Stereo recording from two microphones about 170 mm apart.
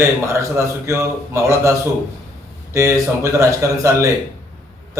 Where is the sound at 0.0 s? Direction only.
15° right (ahead or behind).